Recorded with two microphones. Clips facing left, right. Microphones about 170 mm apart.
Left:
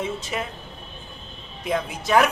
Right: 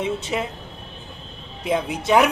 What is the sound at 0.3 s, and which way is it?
Speech, 15° right (ahead or behind).